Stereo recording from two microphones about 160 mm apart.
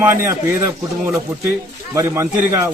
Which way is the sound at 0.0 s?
15° right (ahead or behind).